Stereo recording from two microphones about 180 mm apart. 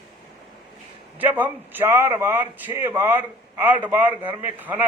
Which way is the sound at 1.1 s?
10° right (ahead or behind).